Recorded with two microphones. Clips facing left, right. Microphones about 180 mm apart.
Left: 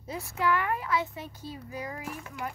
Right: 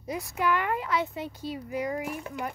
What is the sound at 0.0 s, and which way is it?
Speech, 15° right (ahead or behind).